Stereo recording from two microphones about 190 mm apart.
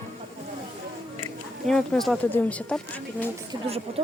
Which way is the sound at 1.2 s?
5° left (ahead or behind).